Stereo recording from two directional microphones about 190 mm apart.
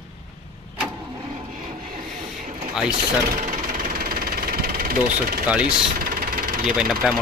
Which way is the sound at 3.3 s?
45° right (ahead or behind).